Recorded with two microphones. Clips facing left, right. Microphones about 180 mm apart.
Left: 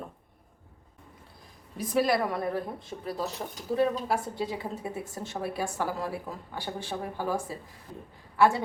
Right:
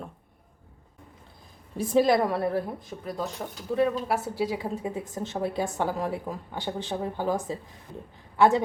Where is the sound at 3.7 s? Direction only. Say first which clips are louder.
Right 1 dB; centre (ahead or behind).